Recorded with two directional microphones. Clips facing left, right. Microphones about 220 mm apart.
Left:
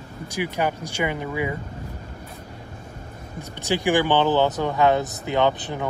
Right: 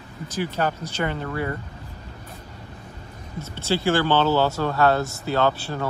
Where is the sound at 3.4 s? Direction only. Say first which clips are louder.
Even; 15° left (ahead or behind).